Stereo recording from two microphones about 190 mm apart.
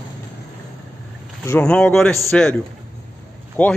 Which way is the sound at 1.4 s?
10° left (ahead or behind).